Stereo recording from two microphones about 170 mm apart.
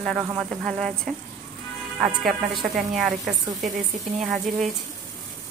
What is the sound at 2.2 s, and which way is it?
A woman's voice, centre (ahead or behind).